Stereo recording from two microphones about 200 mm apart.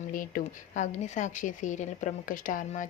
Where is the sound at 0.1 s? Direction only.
45° left (ahead or behind).